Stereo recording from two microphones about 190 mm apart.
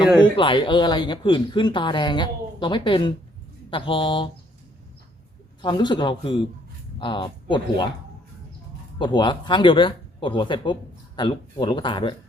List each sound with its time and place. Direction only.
0.3 s speech: 25° left (ahead or behind)
5.6 s speech: 25° left (ahead or behind)
9.0 s speech: 25° left (ahead or behind)